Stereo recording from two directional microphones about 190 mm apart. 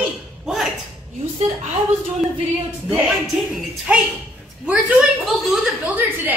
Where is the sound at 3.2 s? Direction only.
Centre (ahead or behind).